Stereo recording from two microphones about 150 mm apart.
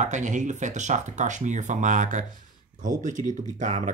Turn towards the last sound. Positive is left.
turn(degrees=-50)  # may be behind; listen again after turning